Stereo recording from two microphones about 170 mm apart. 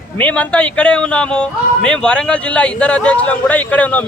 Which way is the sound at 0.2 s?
10° left (ahead or behind).